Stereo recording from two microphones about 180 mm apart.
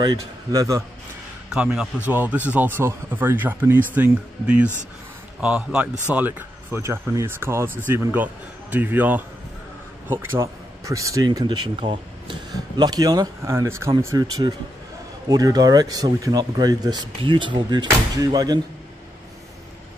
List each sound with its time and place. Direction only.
0.0 s speech: 20° right (ahead or behind)
1.5 s speech: 5° right (ahead or behind); by 18.6 s 20° right (ahead or behind)